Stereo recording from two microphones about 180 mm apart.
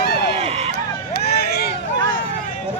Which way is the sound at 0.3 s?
35° right (ahead or behind).